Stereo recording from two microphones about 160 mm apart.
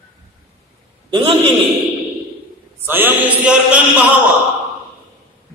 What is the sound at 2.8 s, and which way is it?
Speech, 10° right (ahead or behind).